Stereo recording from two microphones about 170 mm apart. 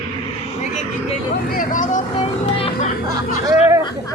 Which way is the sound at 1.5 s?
50° left (ahead or behind).